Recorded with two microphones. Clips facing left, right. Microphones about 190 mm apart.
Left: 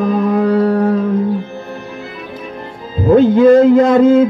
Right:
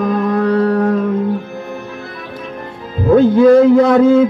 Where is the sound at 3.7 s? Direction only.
20° left (ahead or behind).